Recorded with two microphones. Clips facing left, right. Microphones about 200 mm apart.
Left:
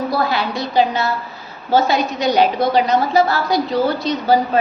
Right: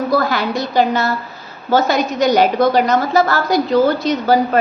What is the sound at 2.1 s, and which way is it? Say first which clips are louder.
A woman's voice: right 4 dB; 45° right (ahead or behind).